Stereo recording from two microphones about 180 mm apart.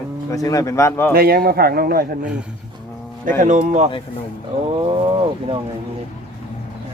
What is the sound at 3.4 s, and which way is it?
Speech, 45° right (ahead or behind).